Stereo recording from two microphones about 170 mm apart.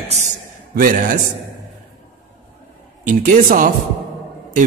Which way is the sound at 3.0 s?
50° right (ahead or behind).